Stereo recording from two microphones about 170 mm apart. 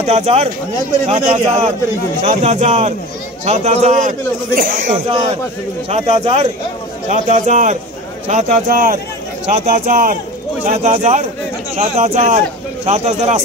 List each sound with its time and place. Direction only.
0.0 s a man's voice: 40° right (ahead or behind)
5.1 s a man's voice: 35° right (ahead or behind)